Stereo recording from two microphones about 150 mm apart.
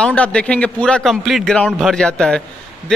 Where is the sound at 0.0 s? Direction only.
10° left (ahead or behind).